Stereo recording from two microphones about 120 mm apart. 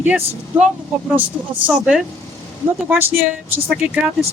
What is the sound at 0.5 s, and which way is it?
Speech, 15° right (ahead or behind).